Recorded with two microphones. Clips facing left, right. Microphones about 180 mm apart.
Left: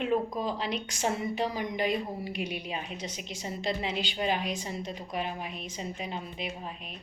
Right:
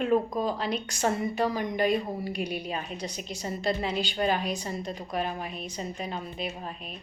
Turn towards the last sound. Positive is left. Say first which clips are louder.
# right 2 dB
turn(degrees=-40)  # may be behind; listen again after turning